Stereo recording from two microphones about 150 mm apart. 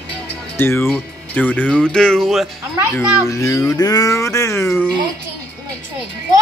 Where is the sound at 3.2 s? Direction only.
20° left (ahead or behind).